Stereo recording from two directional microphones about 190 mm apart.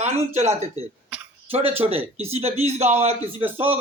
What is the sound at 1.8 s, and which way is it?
A man's voice, 35° right (ahead or behind).